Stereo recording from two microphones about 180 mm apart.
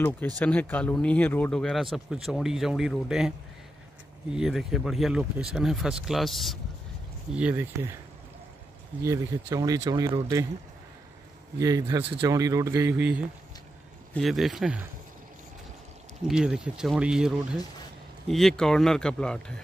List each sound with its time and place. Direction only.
0.4 s speech: 10° left (ahead or behind)
4.4 s speech: centre (ahead or behind)
9.0 s speech: 20° right (ahead or behind)
11.5 s speech: 20° right (ahead or behind); by 14.8 s centre (ahead or behind)
16.3 s speech: 5° right (ahead or behind)